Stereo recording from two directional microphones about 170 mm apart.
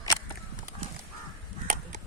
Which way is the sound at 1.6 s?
50° right (ahead or behind).